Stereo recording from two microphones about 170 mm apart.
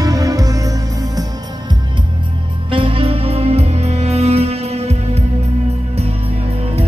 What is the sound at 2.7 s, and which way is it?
Music, 30° right (ahead or behind).